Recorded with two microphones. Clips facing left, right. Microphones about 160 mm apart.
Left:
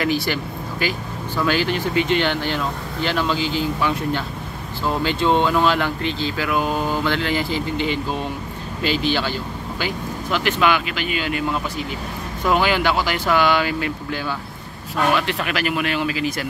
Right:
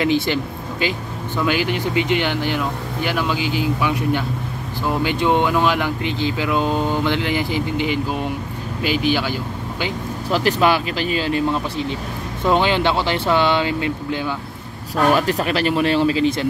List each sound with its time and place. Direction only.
0.0 s speech: 20° right (ahead or behind)
10.3 s a man's voice: 35° right (ahead or behind)
15.0 s a man's voice: 40° right (ahead or behind)